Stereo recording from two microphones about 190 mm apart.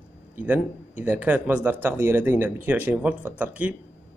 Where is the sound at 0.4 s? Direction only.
10° right (ahead or behind).